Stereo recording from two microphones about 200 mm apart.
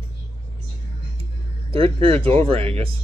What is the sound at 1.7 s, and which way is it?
Speech, 30° right (ahead or behind).